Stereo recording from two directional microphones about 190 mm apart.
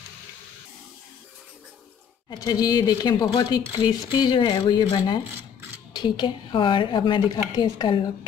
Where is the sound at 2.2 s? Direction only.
20° left (ahead or behind).